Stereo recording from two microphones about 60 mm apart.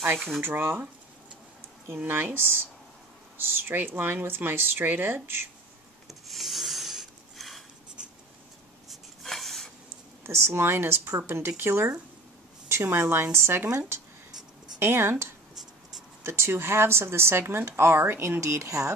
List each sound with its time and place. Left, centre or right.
0.4 s speech: right
2.0 s speech: right
6.2 s rub: centre
9.2 s a sound: centre
10.2 s a woman's voice: right
14.8 s a woman's voice: right
18.4 s speech: right